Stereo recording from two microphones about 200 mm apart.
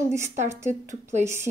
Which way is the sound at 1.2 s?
15° right (ahead or behind).